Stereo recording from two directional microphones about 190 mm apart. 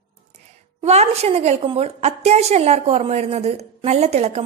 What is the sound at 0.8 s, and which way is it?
A woman's voice, 35° right (ahead or behind).